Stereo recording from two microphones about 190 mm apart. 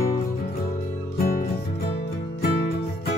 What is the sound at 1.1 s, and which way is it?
Music, 50° left (ahead or behind).